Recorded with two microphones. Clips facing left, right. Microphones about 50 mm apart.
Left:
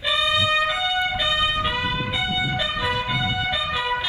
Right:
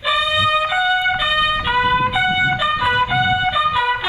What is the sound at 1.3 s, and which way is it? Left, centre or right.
Trumpet, right.